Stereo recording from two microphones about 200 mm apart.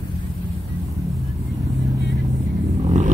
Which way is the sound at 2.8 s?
35° right (ahead or behind).